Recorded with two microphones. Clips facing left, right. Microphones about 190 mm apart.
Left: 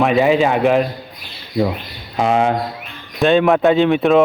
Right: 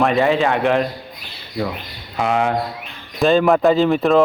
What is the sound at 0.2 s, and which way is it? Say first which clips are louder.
Speech: left 3 dB; 15° left (ahead or behind).